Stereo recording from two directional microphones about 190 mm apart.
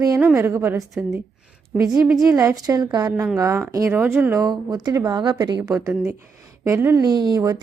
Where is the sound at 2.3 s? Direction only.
15° right (ahead or behind).